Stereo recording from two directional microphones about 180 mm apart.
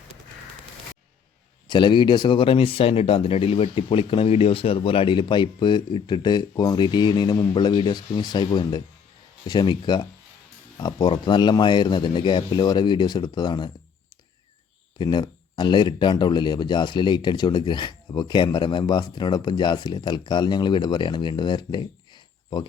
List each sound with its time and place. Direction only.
1.6 s speech: 25° left (ahead or behind)
14.9 s speech: 25° left (ahead or behind)